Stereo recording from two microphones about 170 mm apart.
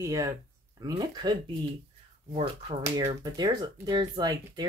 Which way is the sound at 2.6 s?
20° right (ahead or behind).